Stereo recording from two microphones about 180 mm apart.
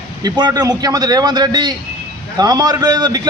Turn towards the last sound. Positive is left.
turn(degrees=-20)  # may be behind; listen again after turning